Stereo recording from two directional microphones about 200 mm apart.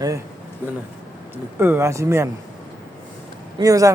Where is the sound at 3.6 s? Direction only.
15° right (ahead or behind).